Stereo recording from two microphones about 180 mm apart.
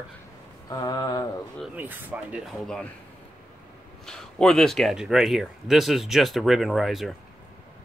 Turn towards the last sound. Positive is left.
turn(degrees=0)  # may be behind; listen again after turning